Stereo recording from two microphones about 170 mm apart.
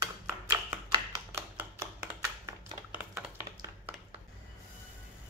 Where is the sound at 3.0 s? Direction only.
10° right (ahead or behind).